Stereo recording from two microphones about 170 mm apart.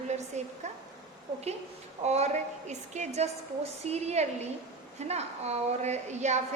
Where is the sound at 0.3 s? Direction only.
45° right (ahead or behind).